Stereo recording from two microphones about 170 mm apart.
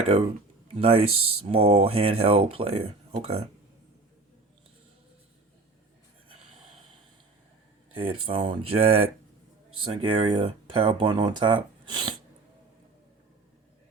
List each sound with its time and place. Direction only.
0.8 s speech: 35° right (ahead or behind)
7.9 s speech: 30° right (ahead or behind)